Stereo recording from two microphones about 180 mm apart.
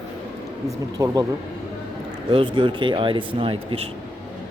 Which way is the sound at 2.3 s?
30° right (ahead or behind).